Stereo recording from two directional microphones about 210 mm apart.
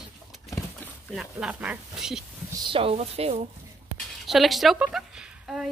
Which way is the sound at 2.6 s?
25° right (ahead or behind).